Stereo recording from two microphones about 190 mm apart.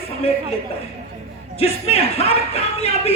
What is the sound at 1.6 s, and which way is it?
Speech, 30° left (ahead or behind).